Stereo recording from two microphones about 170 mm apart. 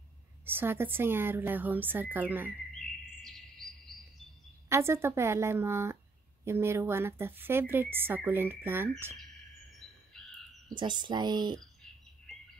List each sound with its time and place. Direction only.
0.5 s speech: 10° right (ahead or behind)
3.2 s music: centre (ahead or behind)
4.6 s speech: 15° right (ahead or behind)
10.7 s speech: 25° right (ahead or behind)